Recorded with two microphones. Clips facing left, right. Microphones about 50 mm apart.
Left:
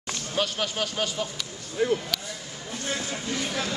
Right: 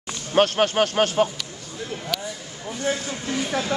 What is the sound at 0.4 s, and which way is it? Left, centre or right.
Speech, right.